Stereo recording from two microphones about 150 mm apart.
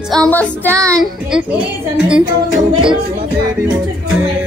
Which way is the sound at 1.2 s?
5° right (ahead or behind).